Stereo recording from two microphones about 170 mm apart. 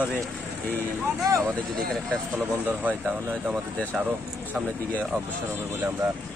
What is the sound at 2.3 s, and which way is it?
Speech, 10° right (ahead or behind).